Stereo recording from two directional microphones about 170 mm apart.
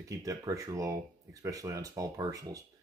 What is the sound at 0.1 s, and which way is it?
Speech, 20° right (ahead or behind).